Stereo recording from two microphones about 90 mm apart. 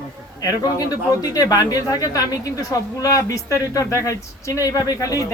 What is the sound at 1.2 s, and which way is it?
A woman's voice, 40° left (ahead or behind).